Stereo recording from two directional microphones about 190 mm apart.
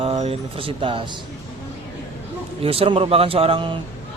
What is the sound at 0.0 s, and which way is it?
Speech, 35° right (ahead or behind).